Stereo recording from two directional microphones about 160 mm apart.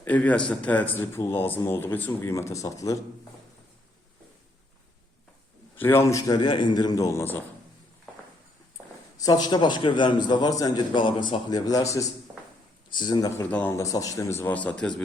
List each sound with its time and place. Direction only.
0.0 s speech: 10° left (ahead or behind)
5.7 s a man's voice: 15° left (ahead or behind)
9.1 s a man's voice: 25° left (ahead or behind)
13.5 s speech: 10° left (ahead or behind)